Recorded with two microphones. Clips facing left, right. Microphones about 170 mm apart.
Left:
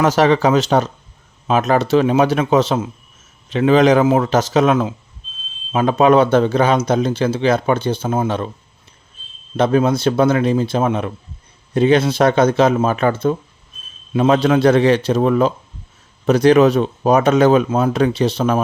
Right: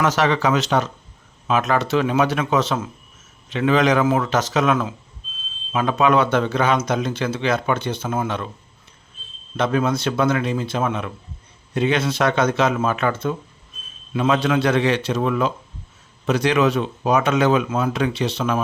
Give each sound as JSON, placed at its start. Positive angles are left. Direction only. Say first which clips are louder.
{"t": 0.0, "sound": "a man's voice", "louder": "left 5 dB", "side_deg": 35}
{"t": 9.6, "sound": "a man's voice", "louder": "left 5 dB", "side_deg": 35}